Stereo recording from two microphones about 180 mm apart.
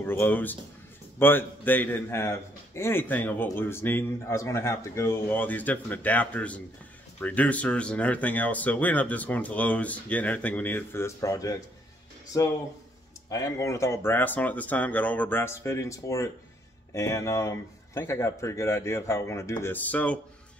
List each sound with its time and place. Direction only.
0.0 s a man's voice: 10° left (ahead or behind)
13.3 s a man's voice: 15° left (ahead or behind)